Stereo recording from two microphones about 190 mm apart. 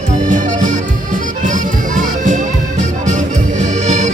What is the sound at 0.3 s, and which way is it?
Music, 45° right (ahead or behind).